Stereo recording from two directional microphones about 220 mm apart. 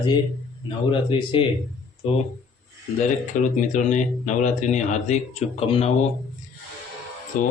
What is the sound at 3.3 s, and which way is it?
Speech, 35° left (ahead or behind).